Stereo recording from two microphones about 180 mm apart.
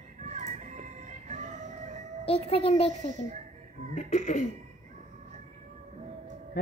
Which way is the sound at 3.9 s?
40° left (ahead or behind).